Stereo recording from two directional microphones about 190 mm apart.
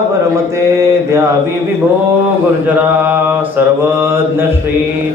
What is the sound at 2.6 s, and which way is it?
Mantra, 10° right (ahead or behind).